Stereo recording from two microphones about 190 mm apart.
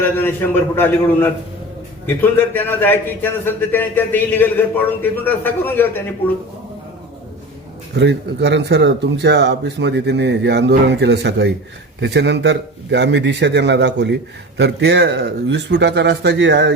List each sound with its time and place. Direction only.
0.0 s a man's voice: 10° left (ahead or behind)
7.9 s speech: 65° right (ahead or behind)